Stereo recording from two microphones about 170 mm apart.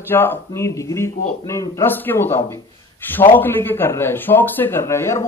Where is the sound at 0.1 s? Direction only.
10° left (ahead or behind).